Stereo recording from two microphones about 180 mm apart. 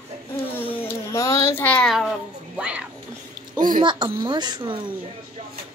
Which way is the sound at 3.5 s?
45° right (ahead or behind).